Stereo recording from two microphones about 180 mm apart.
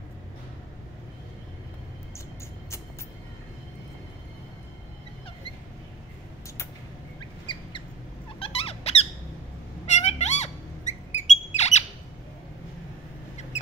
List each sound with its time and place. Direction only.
8.4 s squeak: 30° left (ahead or behind)
9.8 s bird: 40° left (ahead or behind)